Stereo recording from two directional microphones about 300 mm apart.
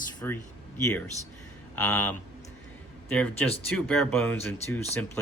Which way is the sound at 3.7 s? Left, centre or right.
Centre.